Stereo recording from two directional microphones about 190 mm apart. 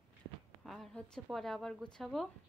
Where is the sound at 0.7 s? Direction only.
Centre (ahead or behind).